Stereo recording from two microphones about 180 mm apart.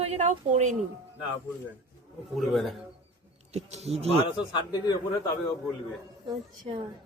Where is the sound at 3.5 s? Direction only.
35° right (ahead or behind).